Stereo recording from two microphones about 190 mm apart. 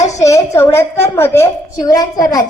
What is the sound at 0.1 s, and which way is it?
A woman's voice, 15° left (ahead or behind).